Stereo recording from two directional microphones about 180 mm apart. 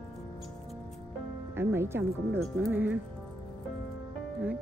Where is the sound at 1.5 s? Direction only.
15° right (ahead or behind).